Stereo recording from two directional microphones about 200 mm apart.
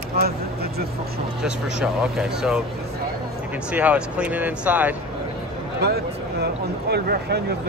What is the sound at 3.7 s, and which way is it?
Speech, 5° right (ahead or behind).